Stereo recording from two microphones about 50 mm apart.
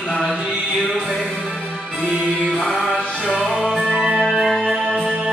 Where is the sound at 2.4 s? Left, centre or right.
Centre.